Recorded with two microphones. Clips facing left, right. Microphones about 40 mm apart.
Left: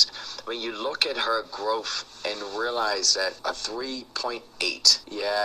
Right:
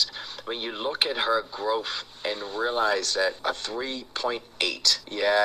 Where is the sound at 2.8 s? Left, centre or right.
Right.